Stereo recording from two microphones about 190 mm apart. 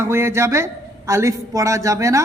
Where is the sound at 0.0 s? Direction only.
15° right (ahead or behind).